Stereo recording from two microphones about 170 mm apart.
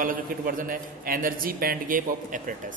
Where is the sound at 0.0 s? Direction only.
55° right (ahead or behind).